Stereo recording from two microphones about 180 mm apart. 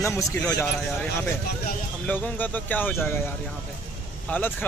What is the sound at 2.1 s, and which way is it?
Speech, 10° left (ahead or behind).